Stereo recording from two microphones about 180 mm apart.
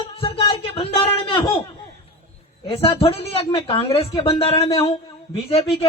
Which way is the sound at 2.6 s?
30° left (ahead or behind).